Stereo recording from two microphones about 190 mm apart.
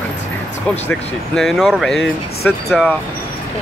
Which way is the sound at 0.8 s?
Centre (ahead or behind).